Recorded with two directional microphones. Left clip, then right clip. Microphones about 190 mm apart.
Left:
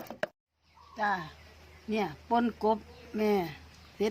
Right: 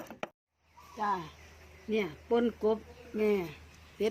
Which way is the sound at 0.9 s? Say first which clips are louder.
Left 2 dB; 45° left (ahead or behind).